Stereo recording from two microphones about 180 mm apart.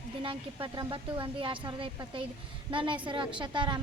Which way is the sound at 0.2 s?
30° right (ahead or behind).